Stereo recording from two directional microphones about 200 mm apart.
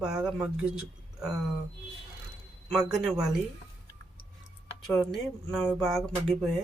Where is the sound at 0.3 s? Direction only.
5° right (ahead or behind).